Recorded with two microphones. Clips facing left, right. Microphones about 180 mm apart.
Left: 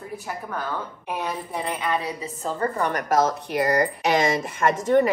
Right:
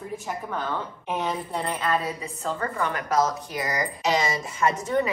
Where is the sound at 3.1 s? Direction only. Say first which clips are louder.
Left 3 dB; 60° left (ahead or behind).